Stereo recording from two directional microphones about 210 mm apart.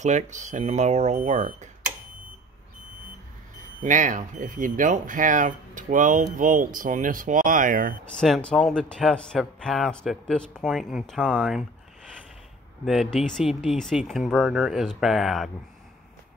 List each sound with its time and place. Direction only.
0.0 s speech: 35° right (ahead or behind)
3.8 s speech: 40° right (ahead or behind)
8.0 s speech: 5° left (ahead or behind)
12.8 s speech: centre (ahead or behind)